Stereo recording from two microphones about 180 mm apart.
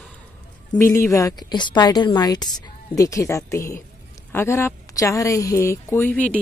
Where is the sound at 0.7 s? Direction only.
15° left (ahead or behind).